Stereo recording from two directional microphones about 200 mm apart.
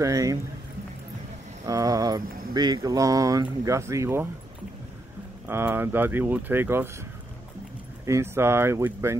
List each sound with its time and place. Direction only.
0.0 s speech: 15° right (ahead or behind)
1.7 s a sound: 15° right (ahead or behind)
2.5 s speech: 20° right (ahead or behind)
5.5 s speech: 10° right (ahead or behind)
8.0 s speech: 15° right (ahead or behind)